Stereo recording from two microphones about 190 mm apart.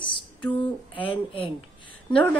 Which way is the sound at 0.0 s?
25° left (ahead or behind).